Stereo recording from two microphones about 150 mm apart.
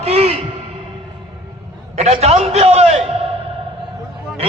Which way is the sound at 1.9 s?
45° right (ahead or behind).